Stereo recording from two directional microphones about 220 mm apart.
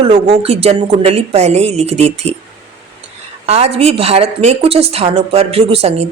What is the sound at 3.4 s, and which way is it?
A woman's voice, 30° right (ahead or behind).